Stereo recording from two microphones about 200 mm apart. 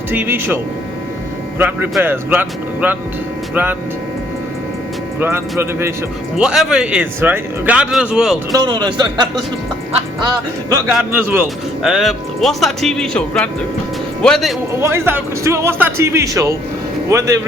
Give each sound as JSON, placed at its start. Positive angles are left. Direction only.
{"t": 0.1, "sound": "speech", "side_deg": -10}
{"t": 5.2, "sound": "speech", "side_deg": -10}
{"t": 8.5, "sound": "a man's voice", "side_deg": -20}
{"t": 14.8, "sound": "speech", "side_deg": -15}